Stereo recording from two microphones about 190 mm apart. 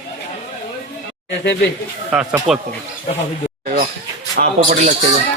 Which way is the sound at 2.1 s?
5° right (ahead or behind).